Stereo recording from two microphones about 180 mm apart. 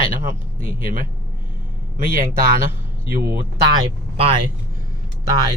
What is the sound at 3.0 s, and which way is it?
Speech, 50° right (ahead or behind).